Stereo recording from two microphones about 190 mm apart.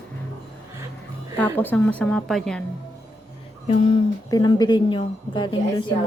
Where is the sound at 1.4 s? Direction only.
10° left (ahead or behind).